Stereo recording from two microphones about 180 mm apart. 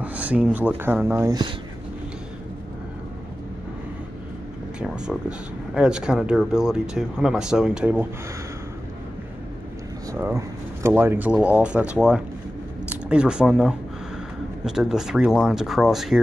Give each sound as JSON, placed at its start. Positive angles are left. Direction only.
{"t": 0.0, "sound": "speech", "side_deg": -10}
{"t": 4.7, "sound": "speech", "side_deg": -5}
{"t": 10.1, "sound": "speech", "side_deg": -15}